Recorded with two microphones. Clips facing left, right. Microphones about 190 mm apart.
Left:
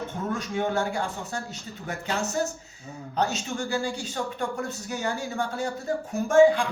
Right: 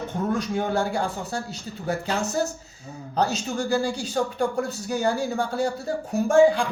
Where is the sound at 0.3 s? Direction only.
35° right (ahead or behind).